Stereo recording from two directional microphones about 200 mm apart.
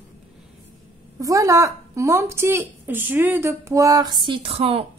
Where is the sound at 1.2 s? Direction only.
15° right (ahead or behind).